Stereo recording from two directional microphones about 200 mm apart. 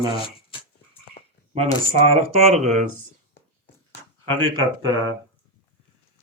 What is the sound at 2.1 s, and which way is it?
Speech, 30° right (ahead or behind).